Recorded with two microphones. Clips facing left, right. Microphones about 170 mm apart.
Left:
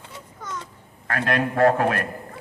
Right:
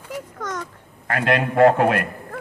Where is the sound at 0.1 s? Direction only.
90° right.